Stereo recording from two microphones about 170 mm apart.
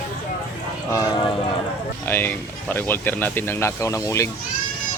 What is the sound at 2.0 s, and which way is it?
Speech, 10° left (ahead or behind).